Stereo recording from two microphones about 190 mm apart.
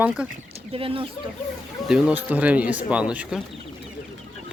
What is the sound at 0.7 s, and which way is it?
Speech, 30° right (ahead or behind).